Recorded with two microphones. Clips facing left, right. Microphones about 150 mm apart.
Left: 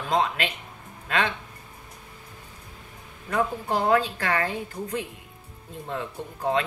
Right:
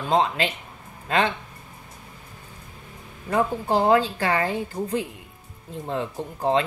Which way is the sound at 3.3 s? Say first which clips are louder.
Right 3 dB; 30° right (ahead or behind).